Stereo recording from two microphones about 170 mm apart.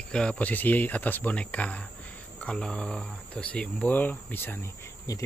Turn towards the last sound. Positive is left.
turn(degrees=20)  # may be behind; listen again after turning